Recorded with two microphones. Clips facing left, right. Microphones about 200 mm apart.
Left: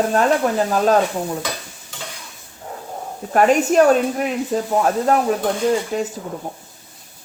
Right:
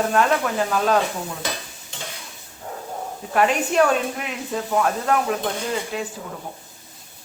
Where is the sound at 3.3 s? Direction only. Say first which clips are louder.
Left 5 dB; 45° left (ahead or behind).